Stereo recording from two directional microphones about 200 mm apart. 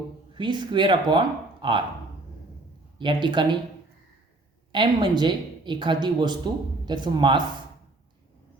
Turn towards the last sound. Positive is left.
turn(degrees=-20)  # may be behind; listen again after turning